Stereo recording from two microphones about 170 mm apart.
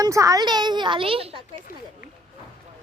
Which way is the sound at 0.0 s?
20° right (ahead or behind).